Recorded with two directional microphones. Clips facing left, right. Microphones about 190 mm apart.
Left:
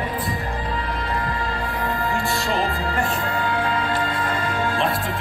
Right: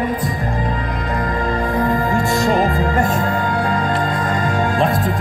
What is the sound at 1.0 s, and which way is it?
Music, 45° right (ahead or behind).